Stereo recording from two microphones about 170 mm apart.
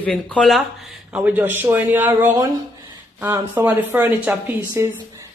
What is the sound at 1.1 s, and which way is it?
Speech, 10° right (ahead or behind).